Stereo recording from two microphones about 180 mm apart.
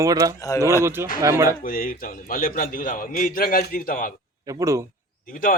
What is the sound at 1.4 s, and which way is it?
A man's voice, 50° left (ahead or behind).